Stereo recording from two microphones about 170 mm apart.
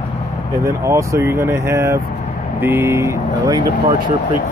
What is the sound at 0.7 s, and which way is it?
Speech, 15° right (ahead or behind).